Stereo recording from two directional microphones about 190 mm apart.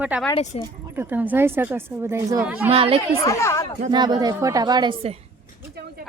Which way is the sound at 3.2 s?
15° left (ahead or behind).